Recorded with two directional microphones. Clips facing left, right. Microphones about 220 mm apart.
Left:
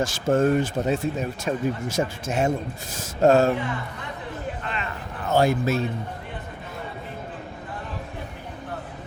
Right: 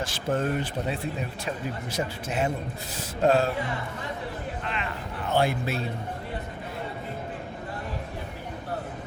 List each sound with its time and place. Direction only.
0.0 s speech: 45° left (ahead or behind)
5.3 s speech: 45° left (ahead or behind)